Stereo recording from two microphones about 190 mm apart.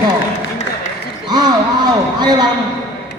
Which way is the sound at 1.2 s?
20° right (ahead or behind).